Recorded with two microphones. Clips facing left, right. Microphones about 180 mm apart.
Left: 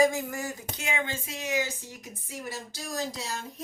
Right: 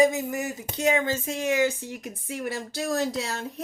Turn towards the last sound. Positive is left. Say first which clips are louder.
# right 6 dB
turn(degrees=-65)  # may be behind; listen again after turning